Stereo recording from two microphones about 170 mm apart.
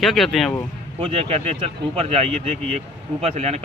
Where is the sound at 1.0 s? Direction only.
35° right (ahead or behind).